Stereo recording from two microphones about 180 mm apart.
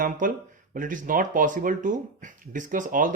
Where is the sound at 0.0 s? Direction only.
50° right (ahead or behind).